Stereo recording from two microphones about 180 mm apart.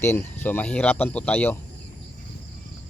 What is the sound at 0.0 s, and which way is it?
Speech, 15° left (ahead or behind).